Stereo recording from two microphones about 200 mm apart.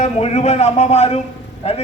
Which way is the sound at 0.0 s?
35° left (ahead or behind).